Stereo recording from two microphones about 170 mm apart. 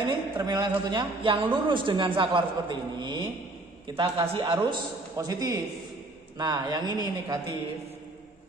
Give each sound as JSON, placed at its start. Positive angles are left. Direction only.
{"t": 0.0, "sound": "a man's voice", "side_deg": -30}